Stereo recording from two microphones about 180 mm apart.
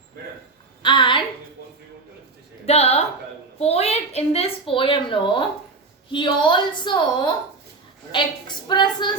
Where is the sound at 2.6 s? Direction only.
35° left (ahead or behind).